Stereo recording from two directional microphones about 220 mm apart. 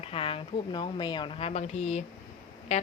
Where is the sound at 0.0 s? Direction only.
25° left (ahead or behind).